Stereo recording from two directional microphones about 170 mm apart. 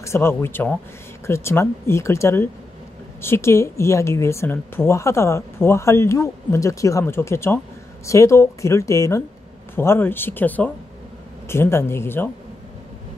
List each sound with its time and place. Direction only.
0.0 s a woman's voice: 15° left (ahead or behind)